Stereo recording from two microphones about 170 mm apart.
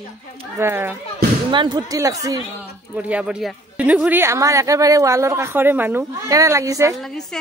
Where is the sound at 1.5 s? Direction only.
25° right (ahead or behind).